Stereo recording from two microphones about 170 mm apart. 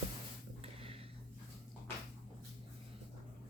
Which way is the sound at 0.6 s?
35° right (ahead or behind).